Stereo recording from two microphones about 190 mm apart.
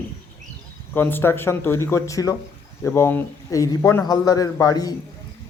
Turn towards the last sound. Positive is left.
turn(degrees=20)  # may be behind; listen again after turning